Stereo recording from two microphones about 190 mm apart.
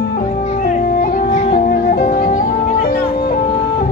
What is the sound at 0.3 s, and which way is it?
Music, 35° left (ahead or behind).